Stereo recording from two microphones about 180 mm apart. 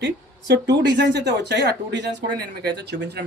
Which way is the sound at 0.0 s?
70° right (ahead or behind).